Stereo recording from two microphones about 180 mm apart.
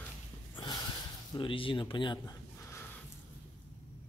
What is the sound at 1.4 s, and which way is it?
Speech, 30° left (ahead or behind).